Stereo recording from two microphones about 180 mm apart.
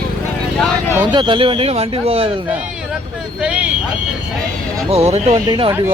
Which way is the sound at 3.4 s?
10° right (ahead or behind).